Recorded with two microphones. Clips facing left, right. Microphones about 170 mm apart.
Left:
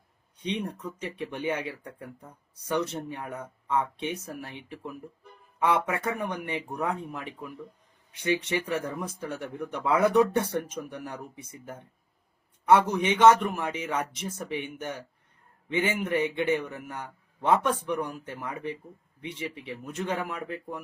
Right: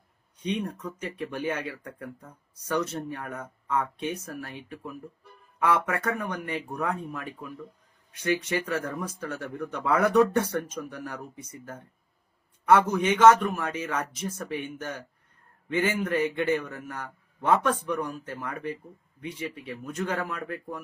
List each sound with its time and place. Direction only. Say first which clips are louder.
0.4 s a man's voice: right 1 dB; 20° left (ahead or behind)
12.6 s a man's voice: right 1 dB; 20° left (ahead or behind)